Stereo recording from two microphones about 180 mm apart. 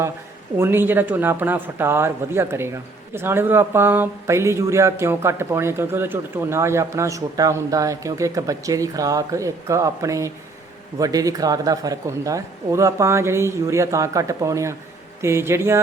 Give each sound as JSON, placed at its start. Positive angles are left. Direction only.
{"t": 0.5, "sound": "speech", "side_deg": -15}